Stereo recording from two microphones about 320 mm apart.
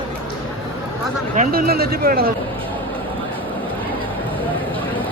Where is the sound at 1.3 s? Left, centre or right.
Right.